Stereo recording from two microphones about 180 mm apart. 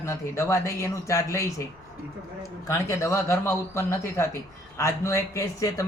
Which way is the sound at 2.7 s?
15° left (ahead or behind).